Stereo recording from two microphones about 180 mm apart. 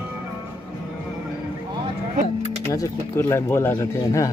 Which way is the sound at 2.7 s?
15° left (ahead or behind).